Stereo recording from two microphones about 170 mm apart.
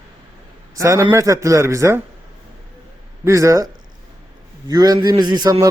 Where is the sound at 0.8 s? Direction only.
20° right (ahead or behind).